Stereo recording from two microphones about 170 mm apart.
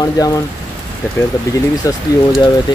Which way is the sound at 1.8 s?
20° left (ahead or behind).